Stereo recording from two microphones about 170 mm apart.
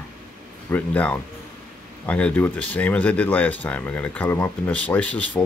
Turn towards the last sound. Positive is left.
turn(degrees=10)  # may be behind; listen again after turning